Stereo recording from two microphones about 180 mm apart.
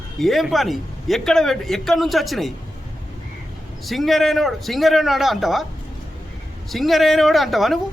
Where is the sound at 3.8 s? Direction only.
Centre (ahead or behind).